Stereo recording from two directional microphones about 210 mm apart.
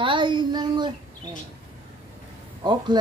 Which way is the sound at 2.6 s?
20° right (ahead or behind).